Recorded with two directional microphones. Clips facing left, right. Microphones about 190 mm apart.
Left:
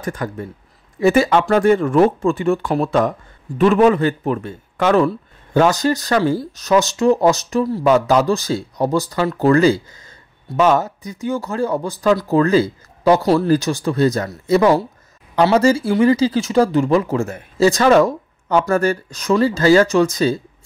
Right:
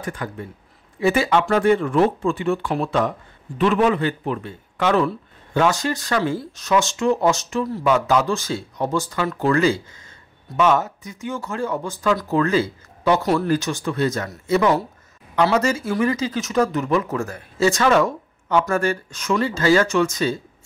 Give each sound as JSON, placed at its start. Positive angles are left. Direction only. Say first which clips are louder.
{"t": 0.0, "sound": "speech", "louder": "left 4 dB", "side_deg": 45}